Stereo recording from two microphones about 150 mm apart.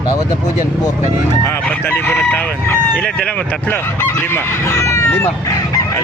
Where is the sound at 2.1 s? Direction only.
10° left (ahead or behind).